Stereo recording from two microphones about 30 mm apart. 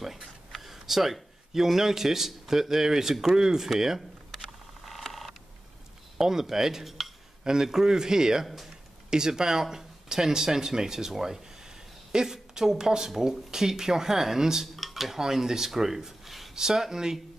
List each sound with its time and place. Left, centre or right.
0.0 s a man's voice: centre
4.8 s a sound: centre
6.1 s speech: centre
7.4 s speech: centre
14.8 s dishes: centre
15.1 s speech: centre